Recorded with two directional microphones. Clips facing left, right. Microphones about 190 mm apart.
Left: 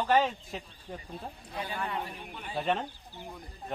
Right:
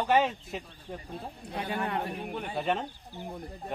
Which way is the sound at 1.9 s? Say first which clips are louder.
Right 4 dB; 50° right (ahead or behind).